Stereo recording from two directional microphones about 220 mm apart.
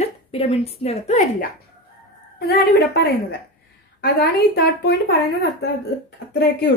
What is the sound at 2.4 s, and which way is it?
A woman's voice, 45° left (ahead or behind).